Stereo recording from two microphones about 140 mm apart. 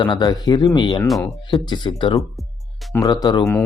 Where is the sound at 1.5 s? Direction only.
30° left (ahead or behind).